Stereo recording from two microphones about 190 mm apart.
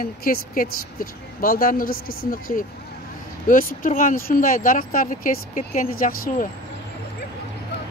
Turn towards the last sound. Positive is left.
turn(degrees=45)  # may be behind; listen again after turning